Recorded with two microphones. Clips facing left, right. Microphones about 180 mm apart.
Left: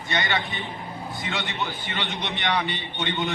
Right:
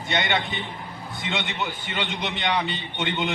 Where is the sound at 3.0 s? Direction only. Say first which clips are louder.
Right 1 dB; 20° right (ahead or behind).